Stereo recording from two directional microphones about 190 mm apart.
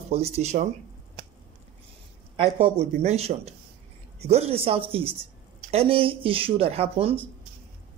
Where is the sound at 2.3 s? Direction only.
30° right (ahead or behind).